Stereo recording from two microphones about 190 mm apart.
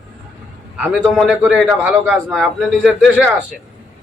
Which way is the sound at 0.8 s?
5° right (ahead or behind).